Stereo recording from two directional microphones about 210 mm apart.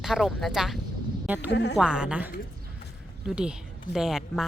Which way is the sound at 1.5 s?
55° left (ahead or behind).